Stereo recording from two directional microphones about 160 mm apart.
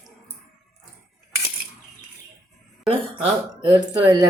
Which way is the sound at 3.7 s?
25° right (ahead or behind).